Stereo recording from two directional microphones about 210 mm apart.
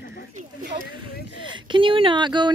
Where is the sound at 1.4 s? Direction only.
20° right (ahead or behind).